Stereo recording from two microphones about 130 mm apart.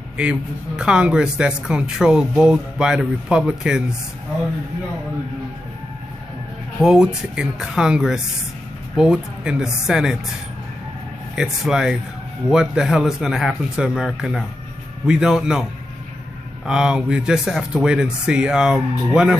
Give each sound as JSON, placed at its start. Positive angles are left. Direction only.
{"t": 0.2, "sound": "speech", "side_deg": -5}
{"t": 6.8, "sound": "speech", "side_deg": -5}
{"t": 11.3, "sound": "speech", "side_deg": -5}
{"t": 16.6, "sound": "speech", "side_deg": -5}